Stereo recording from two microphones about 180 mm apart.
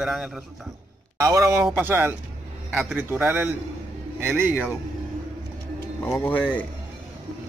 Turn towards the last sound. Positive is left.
turn(degrees=10)  # may be behind; listen again after turning